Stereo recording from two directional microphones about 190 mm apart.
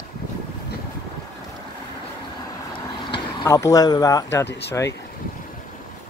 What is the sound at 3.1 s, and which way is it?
Speech, 20° left (ahead or behind).